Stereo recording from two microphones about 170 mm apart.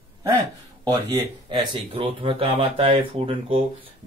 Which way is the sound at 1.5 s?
30° right (ahead or behind).